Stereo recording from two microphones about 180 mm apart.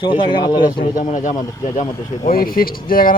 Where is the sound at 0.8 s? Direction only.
45° left (ahead or behind).